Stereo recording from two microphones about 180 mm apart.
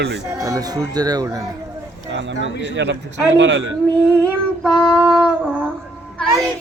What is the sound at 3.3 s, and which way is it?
Speech, 90° right.